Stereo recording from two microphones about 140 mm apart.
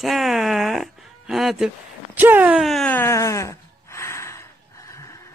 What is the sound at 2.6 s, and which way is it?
Speech, centre (ahead or behind).